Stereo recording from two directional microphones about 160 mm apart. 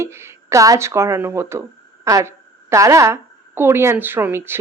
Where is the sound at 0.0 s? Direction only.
15° right (ahead or behind).